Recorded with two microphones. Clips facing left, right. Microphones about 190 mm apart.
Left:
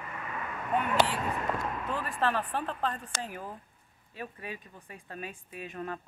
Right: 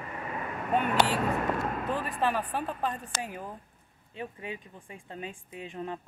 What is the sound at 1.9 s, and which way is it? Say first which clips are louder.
Speech: even; 20° right (ahead or behind).